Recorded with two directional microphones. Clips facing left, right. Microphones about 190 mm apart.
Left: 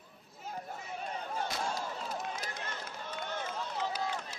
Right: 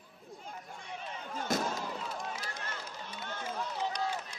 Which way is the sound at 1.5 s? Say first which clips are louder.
Right 6 dB; 45° right (ahead or behind).